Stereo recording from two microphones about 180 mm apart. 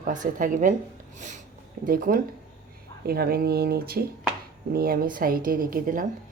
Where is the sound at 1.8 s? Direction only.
50° right (ahead or behind).